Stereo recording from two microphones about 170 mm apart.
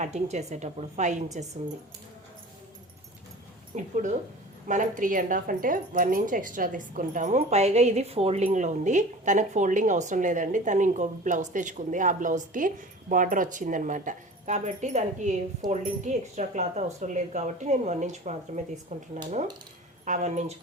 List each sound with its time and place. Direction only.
0.0 s speech: 40° right (ahead or behind)
3.7 s speech: 45° right (ahead or behind)